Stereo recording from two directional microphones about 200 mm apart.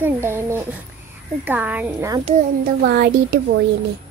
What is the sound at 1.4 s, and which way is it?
Speech, 10° right (ahead or behind).